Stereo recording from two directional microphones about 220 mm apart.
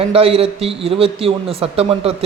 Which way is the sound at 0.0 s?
25° right (ahead or behind).